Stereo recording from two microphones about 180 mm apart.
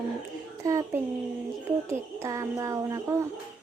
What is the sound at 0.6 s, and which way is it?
Speech, 15° right (ahead or behind).